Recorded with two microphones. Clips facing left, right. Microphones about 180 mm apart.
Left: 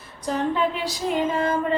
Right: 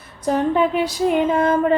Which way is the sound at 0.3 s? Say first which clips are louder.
Right 5 dB; 55° right (ahead or behind).